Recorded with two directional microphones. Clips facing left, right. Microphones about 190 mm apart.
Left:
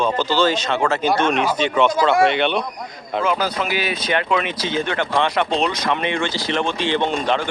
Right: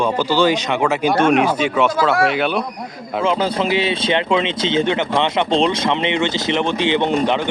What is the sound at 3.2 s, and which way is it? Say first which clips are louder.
Speech: right 4 dB; 25° right (ahead or behind).